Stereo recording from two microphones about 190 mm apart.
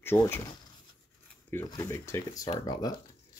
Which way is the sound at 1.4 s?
15° left (ahead or behind).